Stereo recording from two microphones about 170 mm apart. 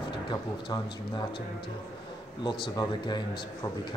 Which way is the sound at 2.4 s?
25° left (ahead or behind).